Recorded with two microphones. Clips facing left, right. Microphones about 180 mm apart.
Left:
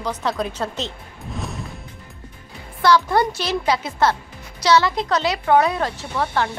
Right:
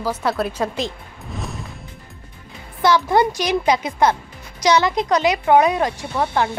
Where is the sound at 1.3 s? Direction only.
Centre (ahead or behind).